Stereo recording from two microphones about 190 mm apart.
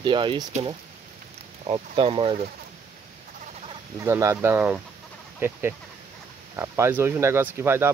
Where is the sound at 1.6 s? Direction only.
25° right (ahead or behind).